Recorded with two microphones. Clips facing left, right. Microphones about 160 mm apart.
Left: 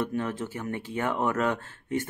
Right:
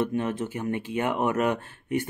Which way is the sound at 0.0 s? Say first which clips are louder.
Right 3 dB; 20° right (ahead or behind).